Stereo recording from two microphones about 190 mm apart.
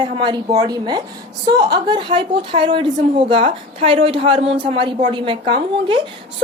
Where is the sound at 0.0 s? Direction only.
25° right (ahead or behind).